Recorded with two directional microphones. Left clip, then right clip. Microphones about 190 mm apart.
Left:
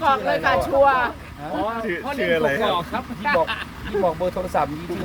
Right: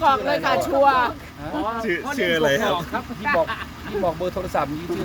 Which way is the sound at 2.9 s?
35° left (ahead or behind).